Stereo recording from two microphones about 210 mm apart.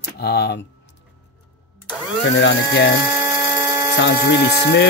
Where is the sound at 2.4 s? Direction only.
60° left (ahead or behind).